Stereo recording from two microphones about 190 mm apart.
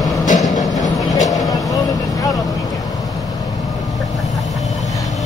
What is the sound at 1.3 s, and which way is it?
Vehicle, 20° left (ahead or behind).